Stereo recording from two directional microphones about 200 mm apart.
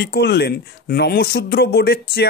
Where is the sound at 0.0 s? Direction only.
55° left (ahead or behind).